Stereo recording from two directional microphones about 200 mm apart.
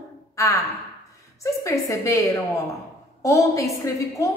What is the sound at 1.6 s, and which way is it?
A woman's voice, 15° left (ahead or behind).